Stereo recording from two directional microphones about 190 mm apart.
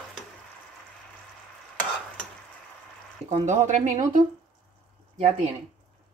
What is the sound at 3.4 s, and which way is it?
Speech, 40° right (ahead or behind).